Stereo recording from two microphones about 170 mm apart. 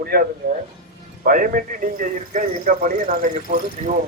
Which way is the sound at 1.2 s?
55° right (ahead or behind).